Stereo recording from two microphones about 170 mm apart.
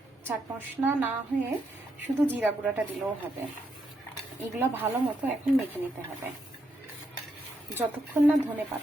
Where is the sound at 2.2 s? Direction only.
10° right (ahead or behind).